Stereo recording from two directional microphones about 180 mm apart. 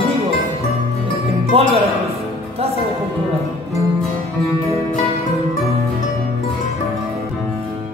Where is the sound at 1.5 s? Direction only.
35° right (ahead or behind).